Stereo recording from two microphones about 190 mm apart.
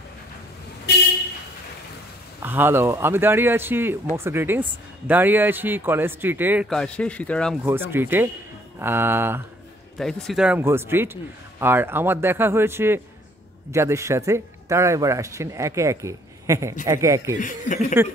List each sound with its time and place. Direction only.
2.4 s speech: 10° right (ahead or behind)
6.7 s speech: 5° left (ahead or behind)
7.6 s speech: 10° right (ahead or behind)
9.9 s speech: centre (ahead or behind); by 17.4 s 15° right (ahead or behind)
17.4 s speech: 40° left (ahead or behind)